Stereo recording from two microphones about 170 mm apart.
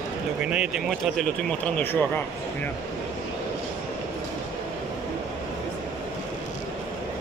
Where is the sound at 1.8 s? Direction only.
10° left (ahead or behind).